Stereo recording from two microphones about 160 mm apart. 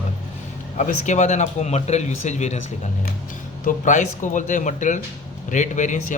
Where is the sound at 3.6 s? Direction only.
50° left (ahead or behind).